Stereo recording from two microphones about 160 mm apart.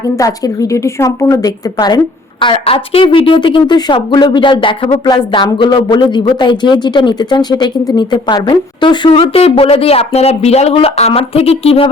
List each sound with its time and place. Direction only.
0.0 s a woman's voice: 20° left (ahead or behind); by 11.9 s 40° left (ahead or behind)